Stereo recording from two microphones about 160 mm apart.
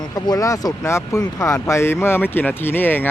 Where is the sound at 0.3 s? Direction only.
20° left (ahead or behind).